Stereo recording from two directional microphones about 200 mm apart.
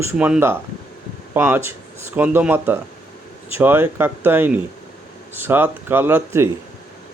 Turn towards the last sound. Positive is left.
turn(degrees=-10)  # may be behind; listen again after turning